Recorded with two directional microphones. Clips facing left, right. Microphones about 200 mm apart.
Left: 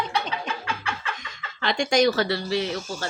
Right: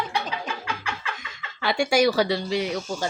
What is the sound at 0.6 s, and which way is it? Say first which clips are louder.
A woman's voice: left 1 dB; 10° right (ahead or behind).